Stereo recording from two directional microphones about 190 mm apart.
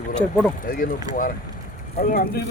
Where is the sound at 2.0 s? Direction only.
50° left (ahead or behind).